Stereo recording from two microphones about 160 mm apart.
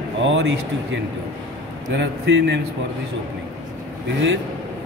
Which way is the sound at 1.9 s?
90° right.